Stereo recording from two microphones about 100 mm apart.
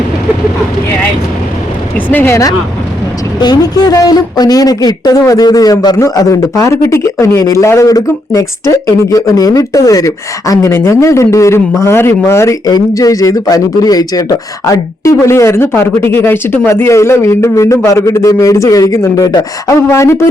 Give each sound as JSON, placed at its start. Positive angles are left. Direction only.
{"t": 2.0, "sound": "speech", "side_deg": 20}
{"t": 3.4, "sound": "speech", "side_deg": 40}
{"t": 12.6, "sound": "speech", "side_deg": 40}